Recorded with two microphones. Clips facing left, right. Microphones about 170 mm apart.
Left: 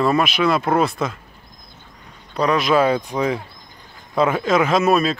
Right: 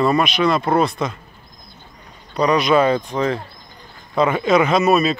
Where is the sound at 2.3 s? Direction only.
Centre (ahead or behind).